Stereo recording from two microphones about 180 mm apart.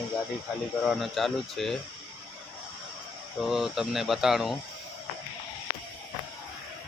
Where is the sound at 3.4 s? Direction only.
Centre (ahead or behind).